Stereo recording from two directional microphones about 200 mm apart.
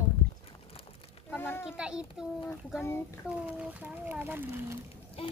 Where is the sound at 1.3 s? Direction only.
10° left (ahead or behind).